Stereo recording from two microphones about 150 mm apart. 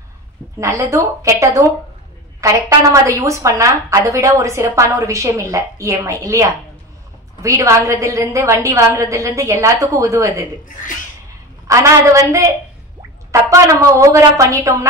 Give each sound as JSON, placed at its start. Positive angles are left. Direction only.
{"t": 0.6, "sound": "a woman's voice", "side_deg": -20}
{"t": 11.6, "sound": "a woman's voice", "side_deg": -20}